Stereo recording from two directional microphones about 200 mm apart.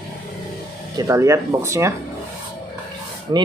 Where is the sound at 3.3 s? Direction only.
20° right (ahead or behind).